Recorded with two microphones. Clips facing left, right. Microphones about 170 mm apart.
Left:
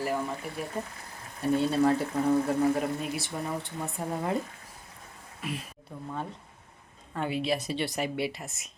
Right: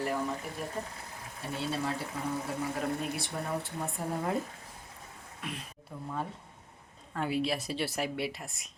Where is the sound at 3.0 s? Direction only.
Centre (ahead or behind).